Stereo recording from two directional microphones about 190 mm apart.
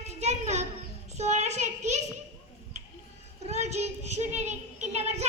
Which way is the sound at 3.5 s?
35° right (ahead or behind).